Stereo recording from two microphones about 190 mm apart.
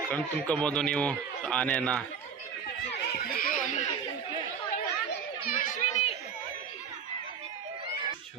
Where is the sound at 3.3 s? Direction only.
50° left (ahead or behind).